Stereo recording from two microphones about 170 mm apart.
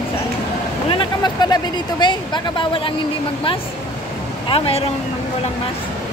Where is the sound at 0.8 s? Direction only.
25° left (ahead or behind).